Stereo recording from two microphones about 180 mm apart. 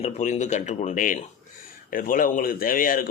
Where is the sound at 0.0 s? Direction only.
40° left (ahead or behind).